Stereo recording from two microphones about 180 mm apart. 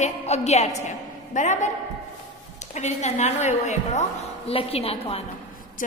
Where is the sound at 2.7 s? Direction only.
40° left (ahead or behind).